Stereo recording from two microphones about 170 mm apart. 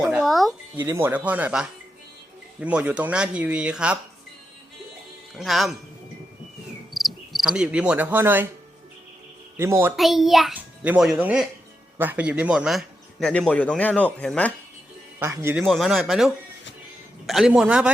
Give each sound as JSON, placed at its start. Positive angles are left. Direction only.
{"t": 0.0, "sound": "music", "side_deg": -5}
{"t": 0.8, "sound": "speech", "side_deg": -15}
{"t": 5.4, "sound": "a man's voice", "side_deg": 0}
{"t": 6.9, "sound": "cricket", "side_deg": 0}
{"t": 9.6, "sound": "speech", "side_deg": -15}
{"t": 9.9, "sound": "a man's voice", "side_deg": 0}
{"t": 15.2, "sound": "speech", "side_deg": -15}
{"t": 15.5, "sound": "a man's voice", "side_deg": 0}